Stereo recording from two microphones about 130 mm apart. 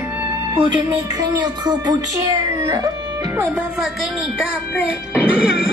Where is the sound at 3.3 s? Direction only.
15° right (ahead or behind).